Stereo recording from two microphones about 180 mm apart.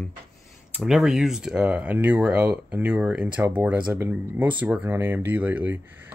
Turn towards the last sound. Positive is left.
turn(degrees=-10)  # may be behind; listen again after turning